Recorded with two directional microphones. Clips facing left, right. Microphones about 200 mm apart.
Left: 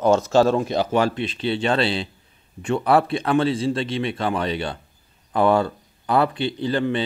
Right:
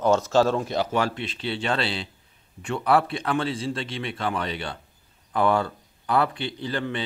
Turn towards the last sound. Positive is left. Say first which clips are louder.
# left 7 dB
turn(degrees=25)  # may be behind; listen again after turning